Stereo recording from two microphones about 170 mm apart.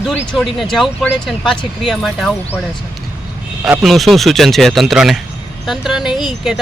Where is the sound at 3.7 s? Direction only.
Centre (ahead or behind).